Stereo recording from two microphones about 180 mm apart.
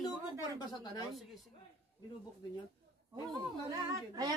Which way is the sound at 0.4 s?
20° left (ahead or behind).